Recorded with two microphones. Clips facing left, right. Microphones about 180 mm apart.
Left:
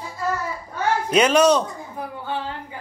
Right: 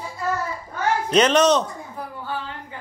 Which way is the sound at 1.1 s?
10° left (ahead or behind).